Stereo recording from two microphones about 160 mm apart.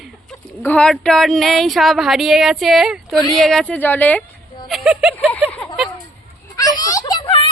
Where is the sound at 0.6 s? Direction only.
10° left (ahead or behind).